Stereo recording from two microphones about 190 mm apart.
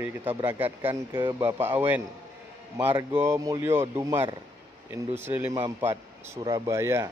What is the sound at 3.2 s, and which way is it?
A man's voice, 15° right (ahead or behind).